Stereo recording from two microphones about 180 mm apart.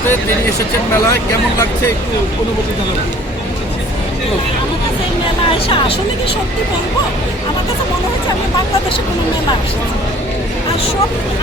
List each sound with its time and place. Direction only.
1.0 s speech: 15° left (ahead or behind)
5.5 s speech: 30° left (ahead or behind)